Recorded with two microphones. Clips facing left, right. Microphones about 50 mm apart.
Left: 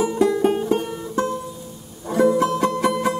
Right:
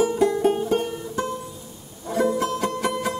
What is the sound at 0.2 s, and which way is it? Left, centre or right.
Music, centre.